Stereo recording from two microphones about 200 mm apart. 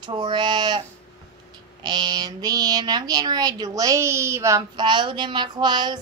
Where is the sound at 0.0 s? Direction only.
20° right (ahead or behind).